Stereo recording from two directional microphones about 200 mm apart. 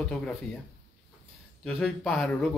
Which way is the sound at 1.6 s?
Centre (ahead or behind).